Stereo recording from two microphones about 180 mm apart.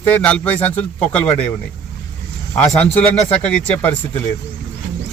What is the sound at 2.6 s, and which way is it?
A man's voice, 5° left (ahead or behind).